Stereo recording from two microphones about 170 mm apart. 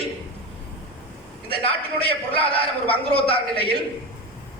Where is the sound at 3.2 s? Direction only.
30° left (ahead or behind).